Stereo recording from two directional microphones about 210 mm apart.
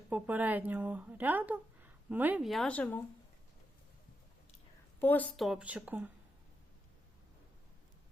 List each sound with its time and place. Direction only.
0.1 s speech: 10° right (ahead or behind)
4.9 s speech: 10° left (ahead or behind); by 6.1 s 10° right (ahead or behind)